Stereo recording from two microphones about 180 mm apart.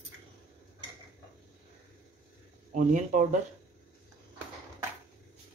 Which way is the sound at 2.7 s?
45° right (ahead or behind).